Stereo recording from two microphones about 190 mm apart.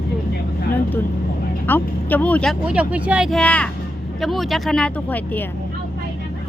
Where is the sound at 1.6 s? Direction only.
10° left (ahead or behind).